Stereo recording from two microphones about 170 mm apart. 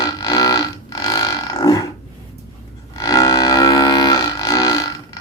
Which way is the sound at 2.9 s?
20° left (ahead or behind).